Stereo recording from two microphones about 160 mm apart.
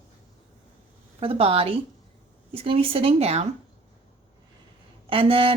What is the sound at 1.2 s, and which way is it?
Speech, 35° right (ahead or behind).